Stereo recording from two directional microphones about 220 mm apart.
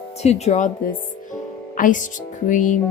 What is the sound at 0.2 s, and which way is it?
Speech, 30° left (ahead or behind).